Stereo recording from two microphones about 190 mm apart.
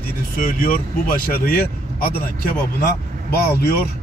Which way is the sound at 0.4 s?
50° left (ahead or behind).